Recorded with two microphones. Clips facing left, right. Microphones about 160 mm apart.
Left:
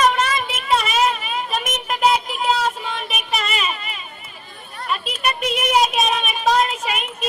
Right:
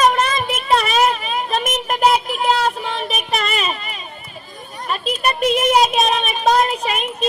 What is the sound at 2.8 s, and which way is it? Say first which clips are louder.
Child singing: right 4 dB; 30° right (ahead or behind).